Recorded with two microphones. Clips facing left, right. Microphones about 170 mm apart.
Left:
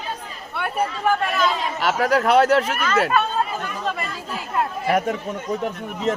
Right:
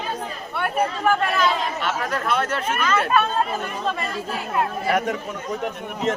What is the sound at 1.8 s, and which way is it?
Speech, 90° left.